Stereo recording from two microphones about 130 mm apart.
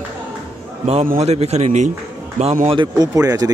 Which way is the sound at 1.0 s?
55° right (ahead or behind).